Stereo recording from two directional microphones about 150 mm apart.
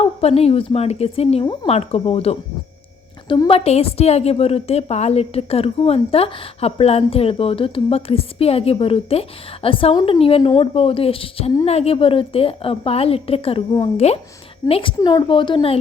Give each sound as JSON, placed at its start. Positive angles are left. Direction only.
{"t": 0.0, "sound": "a woman's voice", "side_deg": 45}